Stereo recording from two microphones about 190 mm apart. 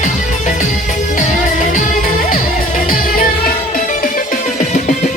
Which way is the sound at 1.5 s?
45° left (ahead or behind).